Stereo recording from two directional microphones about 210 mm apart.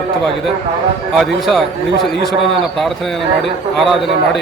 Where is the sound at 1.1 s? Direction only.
Centre (ahead or behind).